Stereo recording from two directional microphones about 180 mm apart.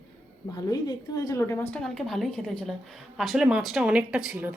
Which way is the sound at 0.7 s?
20° left (ahead or behind).